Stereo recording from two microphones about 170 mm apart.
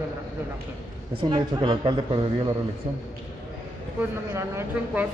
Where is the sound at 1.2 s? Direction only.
25° right (ahead or behind).